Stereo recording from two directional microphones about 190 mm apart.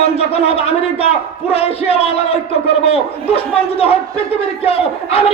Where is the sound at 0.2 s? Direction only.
30° left (ahead or behind).